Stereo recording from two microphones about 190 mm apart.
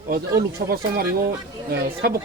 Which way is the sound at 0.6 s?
55° right (ahead or behind).